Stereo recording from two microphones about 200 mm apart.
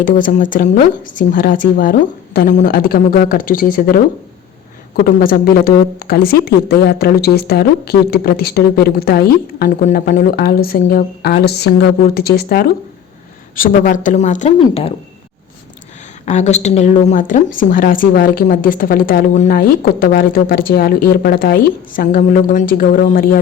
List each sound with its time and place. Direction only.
0.0 s speech: 40° left (ahead or behind)
16.2 s speech: 35° left (ahead or behind)